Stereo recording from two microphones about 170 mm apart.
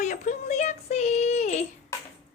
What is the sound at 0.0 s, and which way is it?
Child singing, 45° left (ahead or behind).